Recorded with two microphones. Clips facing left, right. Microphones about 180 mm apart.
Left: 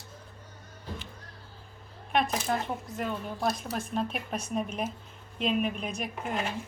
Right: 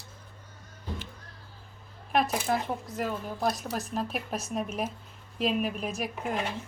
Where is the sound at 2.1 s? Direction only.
5° right (ahead or behind).